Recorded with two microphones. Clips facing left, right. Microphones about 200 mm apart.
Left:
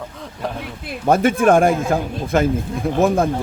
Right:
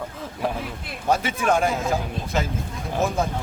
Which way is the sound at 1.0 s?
50° left (ahead or behind).